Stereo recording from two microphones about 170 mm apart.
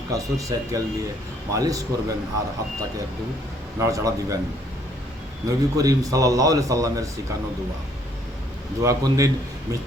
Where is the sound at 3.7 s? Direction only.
20° right (ahead or behind).